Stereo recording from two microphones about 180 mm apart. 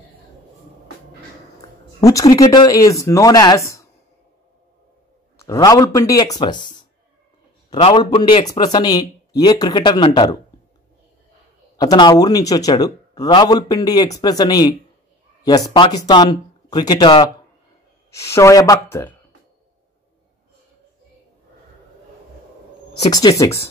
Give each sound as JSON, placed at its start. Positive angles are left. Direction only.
{"t": 2.0, "sound": "speech", "side_deg": 20}
{"t": 5.4, "sound": "speech", "side_deg": 20}
{"t": 7.9, "sound": "speech", "side_deg": 25}
{"t": 11.7, "sound": "speech", "side_deg": 20}
{"t": 23.0, "sound": "speech", "side_deg": 20}